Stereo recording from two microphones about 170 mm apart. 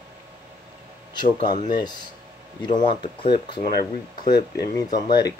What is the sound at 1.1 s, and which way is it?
Speech, 25° left (ahead or behind).